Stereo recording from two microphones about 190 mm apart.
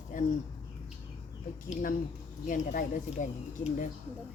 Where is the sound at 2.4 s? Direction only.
40° left (ahead or behind).